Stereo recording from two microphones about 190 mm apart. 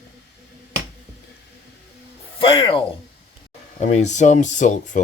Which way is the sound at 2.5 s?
25° left (ahead or behind).